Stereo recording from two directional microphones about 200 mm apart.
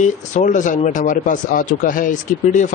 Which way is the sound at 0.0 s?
35° left (ahead or behind).